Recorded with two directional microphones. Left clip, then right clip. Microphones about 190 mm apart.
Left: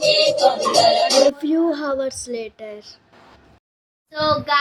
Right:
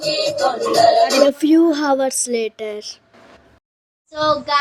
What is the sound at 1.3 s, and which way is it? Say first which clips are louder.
Speech: right 6 dB; 35° right (ahead or behind).